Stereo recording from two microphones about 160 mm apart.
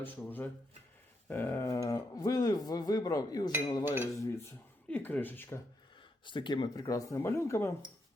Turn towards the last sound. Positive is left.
turn(degrees=15)  # may be behind; listen again after turning